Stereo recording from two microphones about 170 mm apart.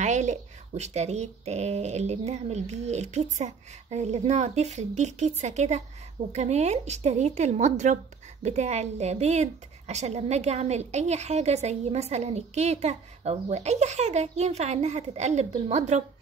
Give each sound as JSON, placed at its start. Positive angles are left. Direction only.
{"t": 0.0, "sound": "speech", "side_deg": -45}